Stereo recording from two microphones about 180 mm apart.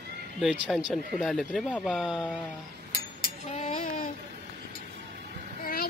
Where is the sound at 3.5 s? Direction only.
40° left (ahead or behind).